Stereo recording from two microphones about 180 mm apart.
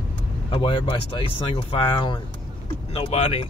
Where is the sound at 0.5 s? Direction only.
25° left (ahead or behind).